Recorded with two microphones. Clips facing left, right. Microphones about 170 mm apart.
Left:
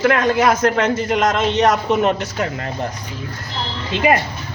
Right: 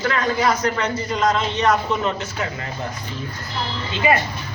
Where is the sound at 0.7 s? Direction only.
90° left.